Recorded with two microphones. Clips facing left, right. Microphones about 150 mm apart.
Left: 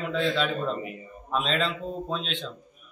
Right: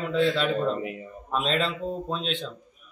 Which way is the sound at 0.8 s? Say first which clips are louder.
Right 4 dB; 75° right (ahead or behind).